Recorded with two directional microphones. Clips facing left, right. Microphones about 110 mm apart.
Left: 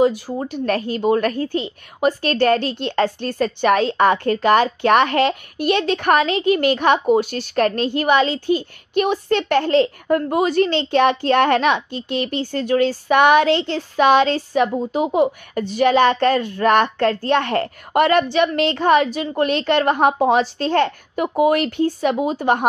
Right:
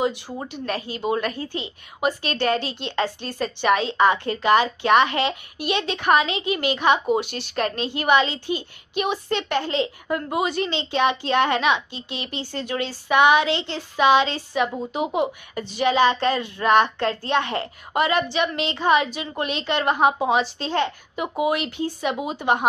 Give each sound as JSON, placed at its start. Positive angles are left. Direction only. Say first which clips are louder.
{"t": 0.5, "sound": "a child's voice", "louder": "left 8 dB", "side_deg": 45}